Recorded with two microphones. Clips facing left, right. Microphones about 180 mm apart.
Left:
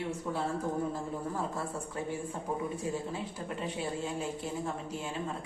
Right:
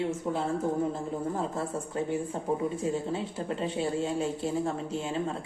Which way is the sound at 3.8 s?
30° right (ahead or behind).